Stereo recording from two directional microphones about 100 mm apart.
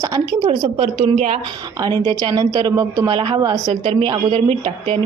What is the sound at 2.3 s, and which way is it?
Speech, 45° right (ahead or behind).